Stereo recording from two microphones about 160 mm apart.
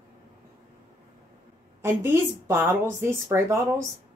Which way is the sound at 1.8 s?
15° right (ahead or behind).